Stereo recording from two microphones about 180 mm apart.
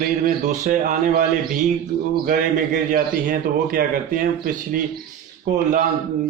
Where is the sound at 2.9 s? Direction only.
50° right (ahead or behind).